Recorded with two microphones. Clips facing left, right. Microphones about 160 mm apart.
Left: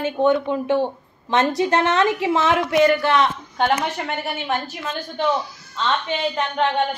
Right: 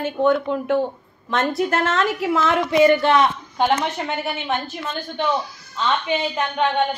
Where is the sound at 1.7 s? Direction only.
20° left (ahead or behind).